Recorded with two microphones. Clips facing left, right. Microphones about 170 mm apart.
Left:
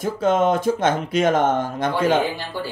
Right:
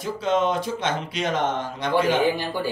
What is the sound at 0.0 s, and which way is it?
Speech, 50° left (ahead or behind).